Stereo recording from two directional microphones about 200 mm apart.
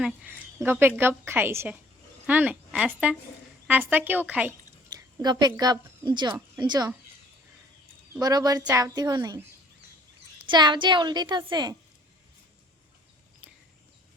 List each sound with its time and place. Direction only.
0.0 s a woman's voice: 10° right (ahead or behind)
4.9 s a woman's voice: 20° right (ahead or behind)
8.2 s a woman's voice: 20° right (ahead or behind)
10.4 s a woman's voice: 25° right (ahead or behind)